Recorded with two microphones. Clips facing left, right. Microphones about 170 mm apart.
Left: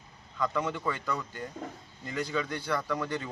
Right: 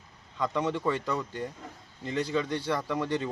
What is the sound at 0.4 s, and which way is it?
A man's voice, 25° right (ahead or behind).